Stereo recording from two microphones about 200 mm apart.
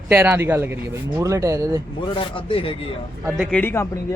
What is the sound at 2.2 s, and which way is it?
Speech, 25° left (ahead or behind).